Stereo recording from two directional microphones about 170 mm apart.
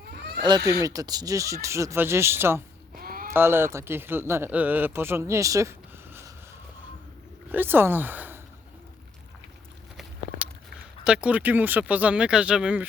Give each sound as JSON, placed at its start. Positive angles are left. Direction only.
{"t": 0.4, "sound": "speech", "side_deg": -20}
{"t": 2.9, "sound": "a sound", "side_deg": -60}
{"t": 3.3, "sound": "speech", "side_deg": -15}
{"t": 7.5, "sound": "speech", "side_deg": -10}
{"t": 10.0, "sound": "walk", "side_deg": -10}
{"t": 11.0, "sound": "speech", "side_deg": -5}